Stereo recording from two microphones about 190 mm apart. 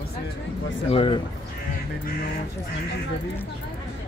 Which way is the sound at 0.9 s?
25° left (ahead or behind).